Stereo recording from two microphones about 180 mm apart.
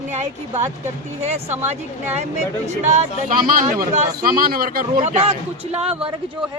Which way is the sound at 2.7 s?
40° right (ahead or behind).